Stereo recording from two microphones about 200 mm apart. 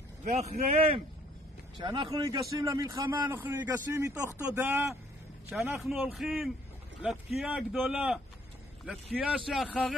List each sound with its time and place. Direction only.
0.2 s a man's voice: 35° right (ahead or behind); by 4.8 s 15° right (ahead or behind)
5.5 s speech: centre (ahead or behind)